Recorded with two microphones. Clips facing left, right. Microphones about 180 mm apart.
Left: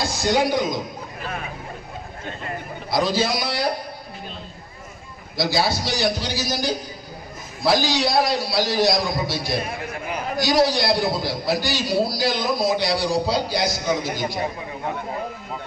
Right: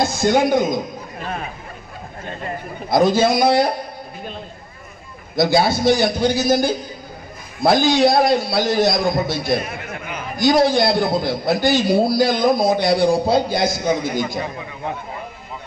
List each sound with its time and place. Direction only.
0.0 s a man's voice: 50° right (ahead or behind)
2.9 s a man's voice: 50° right (ahead or behind)
5.4 s a man's voice: 55° right (ahead or behind)
9.7 s a sound: 35° left (ahead or behind)
10.3 s a man's voice: 50° right (ahead or behind)